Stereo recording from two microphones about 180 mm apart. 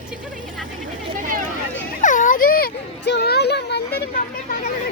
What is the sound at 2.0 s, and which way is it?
Children playing, 45° left (ahead or behind).